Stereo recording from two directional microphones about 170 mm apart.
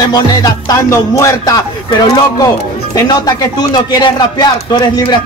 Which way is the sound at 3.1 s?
20° left (ahead or behind).